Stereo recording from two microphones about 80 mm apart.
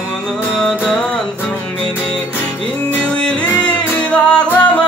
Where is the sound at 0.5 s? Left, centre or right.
Centre.